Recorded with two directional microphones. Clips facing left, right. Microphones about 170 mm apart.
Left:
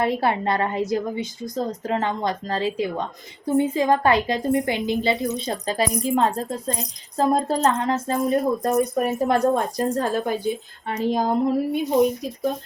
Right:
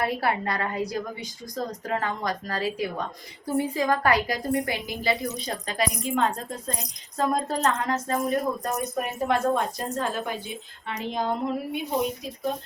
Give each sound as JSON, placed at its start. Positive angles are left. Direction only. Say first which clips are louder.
{"t": 0.0, "sound": "a woman's voice", "louder": "left 4 dB", "side_deg": 25}